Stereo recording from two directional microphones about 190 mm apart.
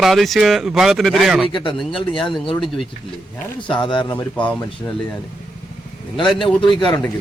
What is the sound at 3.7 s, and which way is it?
Speech, 25° left (ahead or behind).